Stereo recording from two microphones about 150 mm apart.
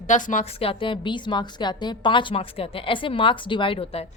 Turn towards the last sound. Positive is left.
turn(degrees=40)  # may be behind; listen again after turning